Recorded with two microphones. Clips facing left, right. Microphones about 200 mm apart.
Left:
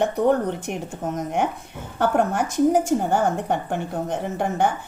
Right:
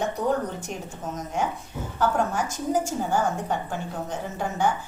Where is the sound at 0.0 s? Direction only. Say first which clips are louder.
Left 6 dB; 60° left (ahead or behind).